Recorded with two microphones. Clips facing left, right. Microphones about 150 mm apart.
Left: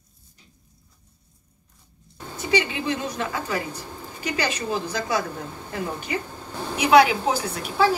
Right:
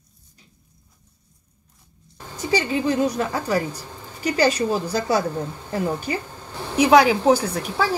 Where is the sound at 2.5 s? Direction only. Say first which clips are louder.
Right 3 dB; 35° right (ahead or behind).